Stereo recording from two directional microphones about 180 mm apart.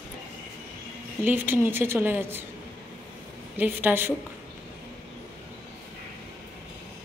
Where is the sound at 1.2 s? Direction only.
10° right (ahead or behind).